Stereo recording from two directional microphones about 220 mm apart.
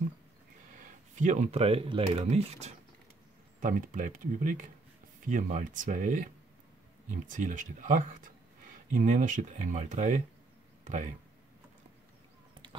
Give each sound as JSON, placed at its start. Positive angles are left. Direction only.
{"t": 1.1, "sound": "speech", "side_deg": -35}
{"t": 7.2, "sound": "speech", "side_deg": -35}